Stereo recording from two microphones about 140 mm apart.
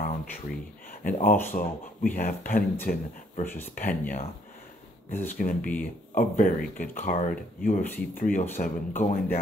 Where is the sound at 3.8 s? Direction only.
70° left (ahead or behind).